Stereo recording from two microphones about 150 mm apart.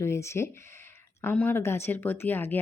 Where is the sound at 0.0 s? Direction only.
20° left (ahead or behind).